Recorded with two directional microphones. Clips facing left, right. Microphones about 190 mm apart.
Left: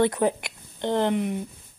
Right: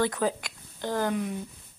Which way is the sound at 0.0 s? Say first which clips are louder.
Left 5 dB; 20° left (ahead or behind).